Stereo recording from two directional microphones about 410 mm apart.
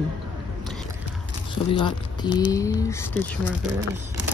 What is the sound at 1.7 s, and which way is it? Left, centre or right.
Speech, centre.